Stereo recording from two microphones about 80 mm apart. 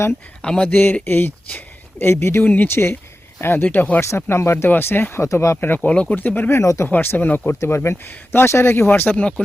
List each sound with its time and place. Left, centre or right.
0.4 s speech: centre
0.7 s speech: left
4.0 s speech: left
5.2 s speech: left
5.5 s speech: left
6.8 s speech: left